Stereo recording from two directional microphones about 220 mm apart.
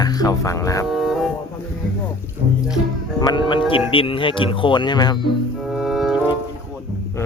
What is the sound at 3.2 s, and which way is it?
Speech, 20° left (ahead or behind).